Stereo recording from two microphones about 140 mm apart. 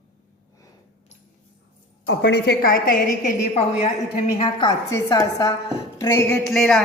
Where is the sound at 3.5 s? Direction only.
45° left (ahead or behind).